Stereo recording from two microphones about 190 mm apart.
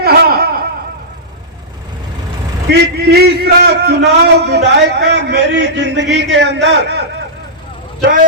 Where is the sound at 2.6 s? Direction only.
60° right (ahead or behind).